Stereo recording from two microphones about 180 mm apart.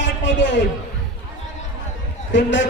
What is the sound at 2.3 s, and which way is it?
Speech, 90° left.